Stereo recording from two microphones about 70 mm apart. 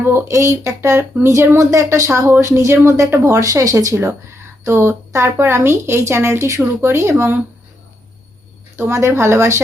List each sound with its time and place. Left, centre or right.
0.0 s speech: right
3.9 s speech: right
8.7 s speech: right